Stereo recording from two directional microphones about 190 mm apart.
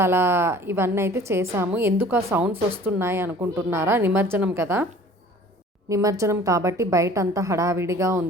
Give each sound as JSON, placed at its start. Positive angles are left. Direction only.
{"t": 0.0, "sound": "a woman's voice", "side_deg": -15}
{"t": 5.9, "sound": "a woman's voice", "side_deg": -15}